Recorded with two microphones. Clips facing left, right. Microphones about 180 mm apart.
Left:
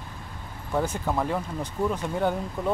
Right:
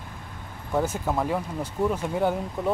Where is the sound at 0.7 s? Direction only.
5° right (ahead or behind).